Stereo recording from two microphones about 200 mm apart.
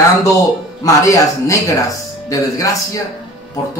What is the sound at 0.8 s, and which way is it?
Speech, 15° left (ahead or behind).